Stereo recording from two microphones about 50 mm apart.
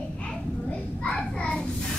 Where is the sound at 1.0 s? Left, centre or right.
Left.